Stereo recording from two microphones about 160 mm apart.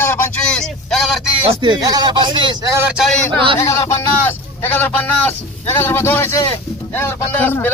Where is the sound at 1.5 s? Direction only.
30° right (ahead or behind).